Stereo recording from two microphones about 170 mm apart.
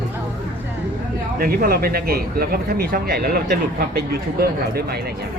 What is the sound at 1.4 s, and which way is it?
A man's voice, 60° right (ahead or behind).